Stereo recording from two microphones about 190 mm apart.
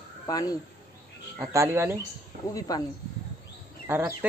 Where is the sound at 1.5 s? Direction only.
15° right (ahead or behind).